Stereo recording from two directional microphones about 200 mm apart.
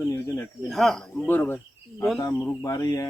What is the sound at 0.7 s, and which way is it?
Speech, centre (ahead or behind).